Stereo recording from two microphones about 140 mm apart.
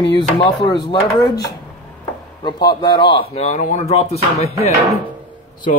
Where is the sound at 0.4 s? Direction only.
25° left (ahead or behind).